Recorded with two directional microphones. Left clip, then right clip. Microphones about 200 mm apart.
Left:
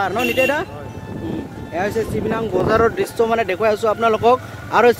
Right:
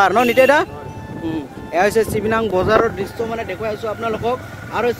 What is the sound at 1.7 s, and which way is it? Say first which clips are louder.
Speech: right 5 dB; 35° right (ahead or behind).